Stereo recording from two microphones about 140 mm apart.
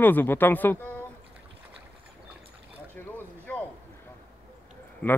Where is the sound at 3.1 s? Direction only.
10° left (ahead or behind).